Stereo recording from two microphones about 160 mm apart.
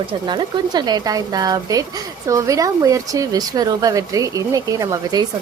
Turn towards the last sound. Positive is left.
turn(degrees=-25)  # may be behind; listen again after turning